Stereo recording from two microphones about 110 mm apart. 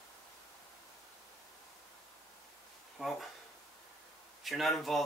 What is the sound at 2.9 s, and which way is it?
Speech, centre (ahead or behind).